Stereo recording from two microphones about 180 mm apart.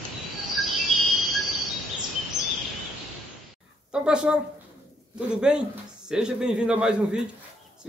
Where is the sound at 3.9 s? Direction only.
5° right (ahead or behind).